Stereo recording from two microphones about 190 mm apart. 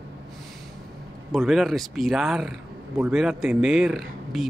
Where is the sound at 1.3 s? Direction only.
Centre (ahead or behind).